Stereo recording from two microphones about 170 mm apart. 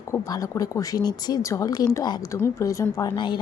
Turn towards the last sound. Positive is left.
turn(degrees=25)  # may be behind; listen again after turning